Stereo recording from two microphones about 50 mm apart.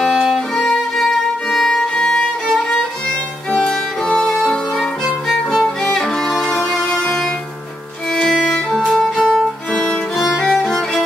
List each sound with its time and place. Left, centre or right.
1.5 s violin: centre
3.5 s music: centre
4.3 s music: centre
8.3 s music: centre
8.9 s violin: centre
10.1 s music: centre